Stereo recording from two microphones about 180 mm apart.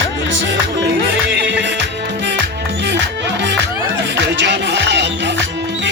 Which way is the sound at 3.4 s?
75° right (ahead or behind).